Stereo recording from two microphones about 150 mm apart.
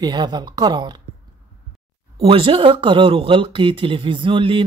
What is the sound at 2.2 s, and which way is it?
Speech, 35° right (ahead or behind).